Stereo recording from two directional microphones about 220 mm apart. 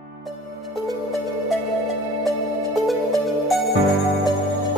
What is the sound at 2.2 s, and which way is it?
Music, centre (ahead or behind).